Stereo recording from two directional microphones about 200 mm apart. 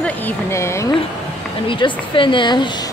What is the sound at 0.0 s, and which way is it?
Speech, 10° left (ahead or behind).